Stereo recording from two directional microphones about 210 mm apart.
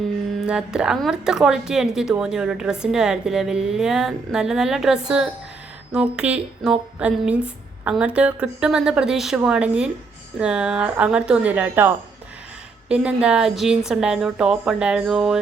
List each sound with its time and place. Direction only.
0.4 s speech: 5° right (ahead or behind)